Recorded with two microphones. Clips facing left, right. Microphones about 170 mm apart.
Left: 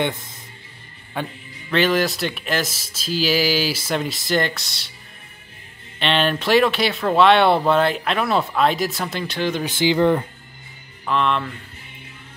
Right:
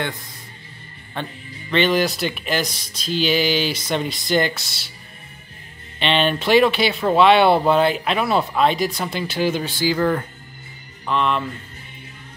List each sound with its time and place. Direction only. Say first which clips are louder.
1.1 s speech: left 1 dB; 10° left (ahead or behind)
5.9 s speech: right 1 dB; centre (ahead or behind)
9.7 s speech: left 3 dB; 20° left (ahead or behind)
11.1 s speech: even; centre (ahead or behind)